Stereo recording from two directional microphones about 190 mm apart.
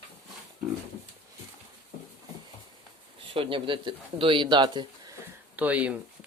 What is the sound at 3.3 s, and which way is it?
Speech, 25° right (ahead or behind).